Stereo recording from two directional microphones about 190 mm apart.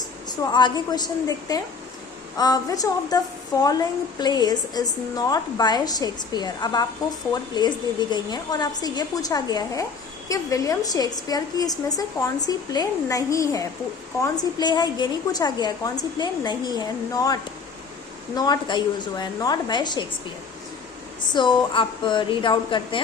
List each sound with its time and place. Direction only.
0.3 s a woman's voice: 20° left (ahead or behind)
8.1 s a woman's voice: 20° left (ahead or behind)
21.3 s a woman's voice: 25° left (ahead or behind)